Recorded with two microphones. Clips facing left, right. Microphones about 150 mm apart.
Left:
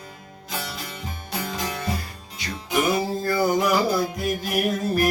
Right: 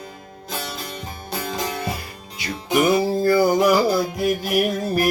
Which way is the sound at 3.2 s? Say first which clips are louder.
Right 5 dB; 5° right (ahead or behind).